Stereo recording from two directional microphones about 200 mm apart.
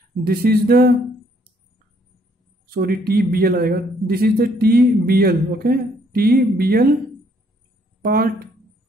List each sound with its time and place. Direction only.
0.2 s a man's voice: 50° right (ahead or behind)
2.6 s a man's voice: 50° right (ahead or behind)
8.0 s speech: 50° right (ahead or behind)